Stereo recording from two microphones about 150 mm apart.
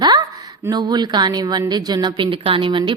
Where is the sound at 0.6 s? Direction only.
25° right (ahead or behind).